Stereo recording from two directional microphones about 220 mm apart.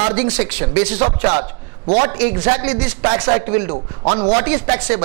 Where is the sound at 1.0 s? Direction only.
25° right (ahead or behind).